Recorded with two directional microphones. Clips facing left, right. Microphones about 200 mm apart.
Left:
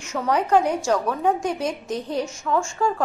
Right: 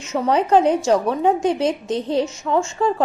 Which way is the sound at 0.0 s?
20° right (ahead or behind).